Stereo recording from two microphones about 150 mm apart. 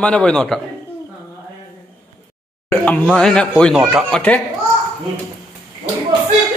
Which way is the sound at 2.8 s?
5° left (ahead or behind).